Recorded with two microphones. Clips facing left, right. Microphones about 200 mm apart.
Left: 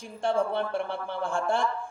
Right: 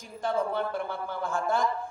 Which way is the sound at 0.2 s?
30° left (ahead or behind).